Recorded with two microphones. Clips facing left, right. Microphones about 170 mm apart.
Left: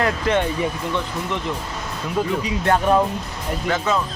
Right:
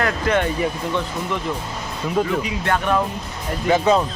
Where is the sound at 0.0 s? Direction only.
25° left (ahead or behind).